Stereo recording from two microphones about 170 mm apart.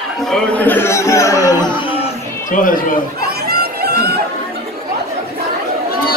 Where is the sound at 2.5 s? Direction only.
50° left (ahead or behind).